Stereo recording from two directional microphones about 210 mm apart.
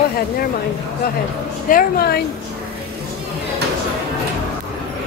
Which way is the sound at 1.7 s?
45° left (ahead or behind).